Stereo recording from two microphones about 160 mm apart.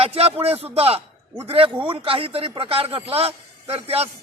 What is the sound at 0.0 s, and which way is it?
A man's voice, 35° right (ahead or behind).